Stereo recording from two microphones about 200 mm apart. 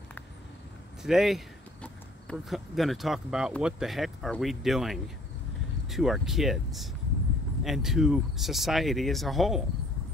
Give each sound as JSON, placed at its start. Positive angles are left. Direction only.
{"t": 1.0, "sound": "speech", "side_deg": 0}